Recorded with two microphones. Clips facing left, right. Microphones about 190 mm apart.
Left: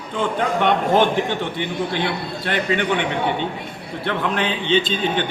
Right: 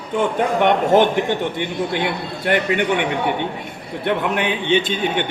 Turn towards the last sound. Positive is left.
turn(degrees=-15)  # may be behind; listen again after turning